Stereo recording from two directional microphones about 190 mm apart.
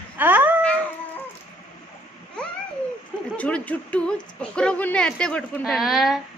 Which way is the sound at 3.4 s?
5° left (ahead or behind).